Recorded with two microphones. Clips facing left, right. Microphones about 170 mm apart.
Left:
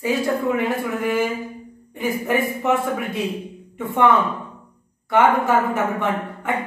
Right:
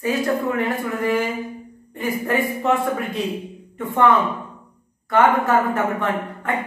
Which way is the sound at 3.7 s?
10° left (ahead or behind).